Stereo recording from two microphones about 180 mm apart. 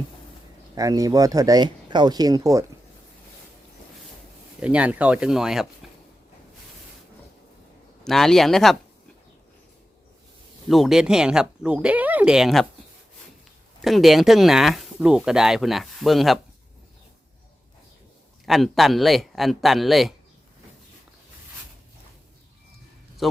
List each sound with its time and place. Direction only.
0.8 s speech: 20° right (ahead or behind)
4.6 s speech: 5° right (ahead or behind)
8.0 s speech: centre (ahead or behind)
10.7 s speech: centre (ahead or behind)
13.8 s speech: centre (ahead or behind)
18.4 s speech: centre (ahead or behind)
23.2 s speech: centre (ahead or behind)